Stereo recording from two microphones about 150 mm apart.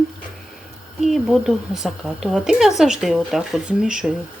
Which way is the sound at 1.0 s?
Centre (ahead or behind).